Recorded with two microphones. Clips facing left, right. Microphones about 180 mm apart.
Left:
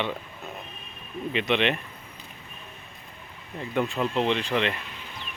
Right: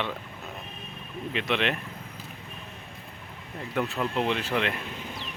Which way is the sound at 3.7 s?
Centre (ahead or behind).